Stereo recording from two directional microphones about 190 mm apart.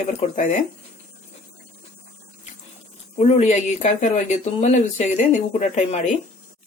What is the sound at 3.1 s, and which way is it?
Speech, 35° left (ahead or behind).